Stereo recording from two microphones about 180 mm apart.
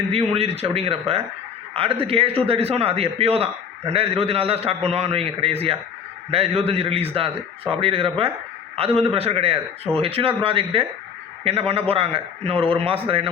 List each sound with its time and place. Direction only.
0.1 s a man's voice: 35° right (ahead or behind)